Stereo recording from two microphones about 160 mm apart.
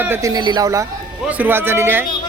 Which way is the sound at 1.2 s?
10° right (ahead or behind).